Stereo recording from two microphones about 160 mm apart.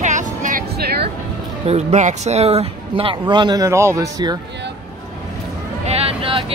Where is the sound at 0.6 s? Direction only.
80° right.